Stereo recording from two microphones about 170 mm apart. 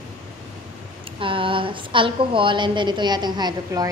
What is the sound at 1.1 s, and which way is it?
A woman's voice, 30° right (ahead or behind).